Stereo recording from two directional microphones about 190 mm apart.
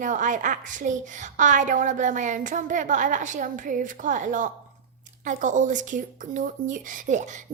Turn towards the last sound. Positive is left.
turn(degrees=-40)  # may be behind; listen again after turning